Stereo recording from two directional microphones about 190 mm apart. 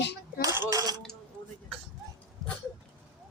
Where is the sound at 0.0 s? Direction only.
60° left (ahead or behind).